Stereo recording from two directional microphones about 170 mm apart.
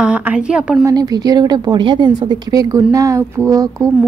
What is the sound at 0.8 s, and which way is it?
A woman's voice, 20° right (ahead or behind).